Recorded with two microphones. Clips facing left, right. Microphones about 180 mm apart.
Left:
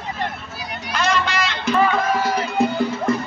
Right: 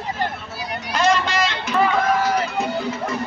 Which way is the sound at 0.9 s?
40° right (ahead or behind).